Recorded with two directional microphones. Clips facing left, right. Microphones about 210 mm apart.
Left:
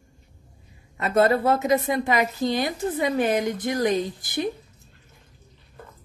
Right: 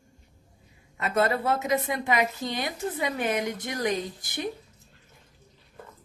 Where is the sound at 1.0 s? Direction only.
40° left (ahead or behind).